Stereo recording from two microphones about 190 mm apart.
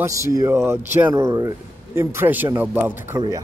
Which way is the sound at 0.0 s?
15° right (ahead or behind).